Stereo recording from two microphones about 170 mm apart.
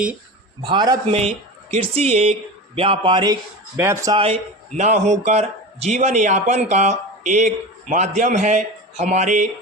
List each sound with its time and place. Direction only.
0.6 s a man's voice: 30° right (ahead or behind)
3.8 s speech: 15° right (ahead or behind)
4.1 s a man's voice: 30° right (ahead or behind)
4.8 s a man's voice: 45° right (ahead or behind)